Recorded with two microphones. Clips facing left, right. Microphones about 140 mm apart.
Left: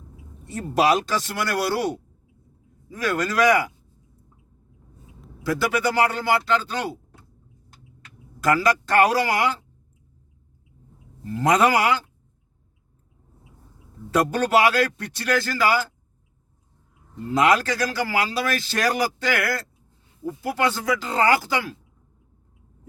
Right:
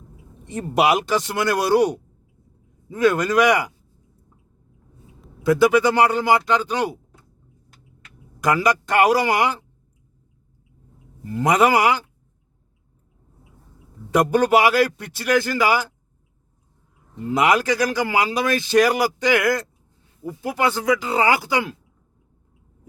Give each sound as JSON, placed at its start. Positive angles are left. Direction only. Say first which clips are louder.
{"t": 0.4, "sound": "a man's voice", "louder": "right 1 dB", "side_deg": -15}
{"t": 5.4, "sound": "a man's voice", "louder": "right 7 dB", "side_deg": -20}
{"t": 8.4, "sound": "a man's voice", "louder": "right 1 dB", "side_deg": -15}
{"t": 11.3, "sound": "a man's voice", "louder": "right 2 dB", "side_deg": -15}
{"t": 14.1, "sound": "a man's voice", "louder": "right 3 dB", "side_deg": -15}
{"t": 17.3, "sound": "a man's voice", "louder": "right 1 dB", "side_deg": -15}